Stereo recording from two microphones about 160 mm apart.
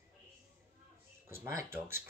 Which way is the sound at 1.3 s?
15° right (ahead or behind).